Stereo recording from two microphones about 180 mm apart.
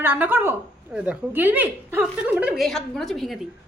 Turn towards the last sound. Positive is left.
turn(degrees=0)  # may be behind; listen again after turning